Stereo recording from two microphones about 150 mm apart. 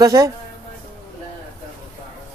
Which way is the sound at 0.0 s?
25° right (ahead or behind).